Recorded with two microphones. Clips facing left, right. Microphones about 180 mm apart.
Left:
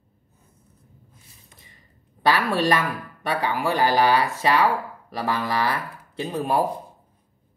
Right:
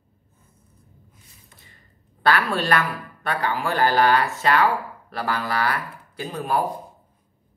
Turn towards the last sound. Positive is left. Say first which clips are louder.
# left 1 dB
turn(degrees=25)  # may be behind; listen again after turning